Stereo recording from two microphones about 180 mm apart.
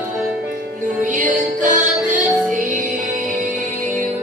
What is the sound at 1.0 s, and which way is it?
Music, 45° right (ahead or behind).